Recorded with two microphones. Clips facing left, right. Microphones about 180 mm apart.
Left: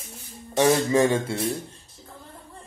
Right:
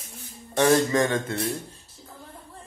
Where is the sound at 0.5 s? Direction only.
10° left (ahead or behind).